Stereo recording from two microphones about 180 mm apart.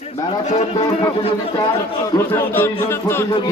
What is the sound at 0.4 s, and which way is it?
Speech, 35° left (ahead or behind).